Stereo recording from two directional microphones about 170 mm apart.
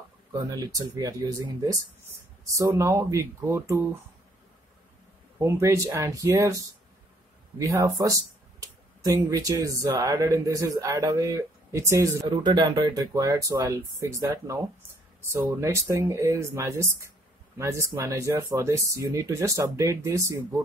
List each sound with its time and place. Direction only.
0.3 s speech: 20° right (ahead or behind)
5.4 s speech: 15° right (ahead or behind)